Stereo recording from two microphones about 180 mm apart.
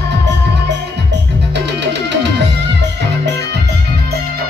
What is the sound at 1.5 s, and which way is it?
Music, 70° right (ahead or behind).